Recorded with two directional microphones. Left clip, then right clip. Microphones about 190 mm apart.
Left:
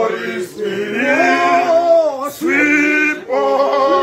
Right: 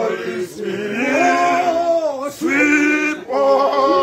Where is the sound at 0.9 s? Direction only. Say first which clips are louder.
Left 2 dB; 15° right (ahead or behind).